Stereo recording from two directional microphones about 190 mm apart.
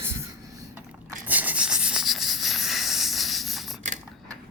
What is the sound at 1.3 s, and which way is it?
Rub, 10° right (ahead or behind).